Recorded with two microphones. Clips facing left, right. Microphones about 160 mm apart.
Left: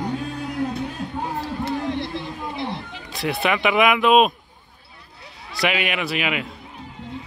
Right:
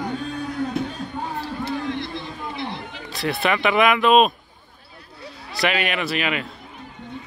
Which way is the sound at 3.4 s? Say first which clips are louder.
Even; 10° left (ahead or behind).